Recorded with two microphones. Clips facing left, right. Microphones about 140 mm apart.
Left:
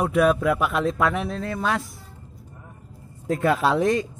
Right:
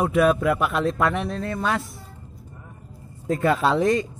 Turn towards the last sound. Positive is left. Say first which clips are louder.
# right 1 dB
turn(degrees=0)  # may be behind; listen again after turning